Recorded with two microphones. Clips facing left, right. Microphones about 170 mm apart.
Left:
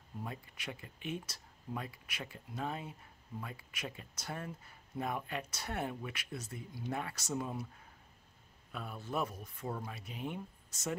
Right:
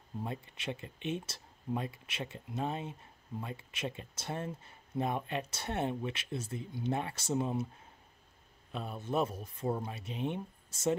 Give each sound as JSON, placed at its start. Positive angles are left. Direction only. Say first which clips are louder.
{"t": 0.2, "sound": "speech", "louder": "right 4 dB", "side_deg": -25}
{"t": 8.7, "sound": "speech", "louder": "right 5 dB", "side_deg": -25}